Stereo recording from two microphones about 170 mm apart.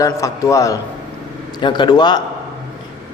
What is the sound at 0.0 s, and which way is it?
A man's voice, 20° left (ahead or behind).